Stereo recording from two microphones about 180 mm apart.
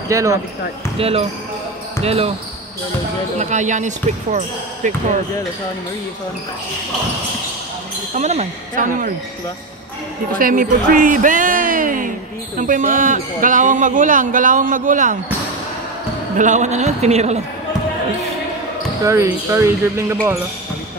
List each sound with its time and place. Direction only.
0.1 s speech: 15° right (ahead or behind)
0.9 s speech: 35° right (ahead or behind)
3.3 s speech: 40° right (ahead or behind)
8.1 s a man's voice: 40° right (ahead or behind)
10.4 s a man's voice: 50° right (ahead or behind)
16.3 s speech: 40° right (ahead or behind)
19.0 s speech: 15° right (ahead or behind)